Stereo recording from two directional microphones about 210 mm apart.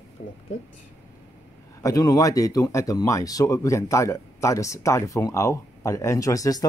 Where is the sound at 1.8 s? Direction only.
15° left (ahead or behind).